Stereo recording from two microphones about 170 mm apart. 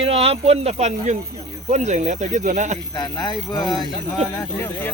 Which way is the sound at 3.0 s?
25° left (ahead or behind).